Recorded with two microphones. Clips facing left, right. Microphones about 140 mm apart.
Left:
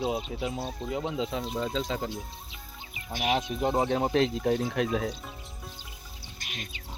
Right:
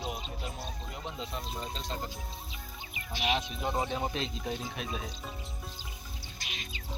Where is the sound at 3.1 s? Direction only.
45° left (ahead or behind).